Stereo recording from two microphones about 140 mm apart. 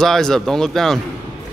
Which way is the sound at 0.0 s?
5° left (ahead or behind).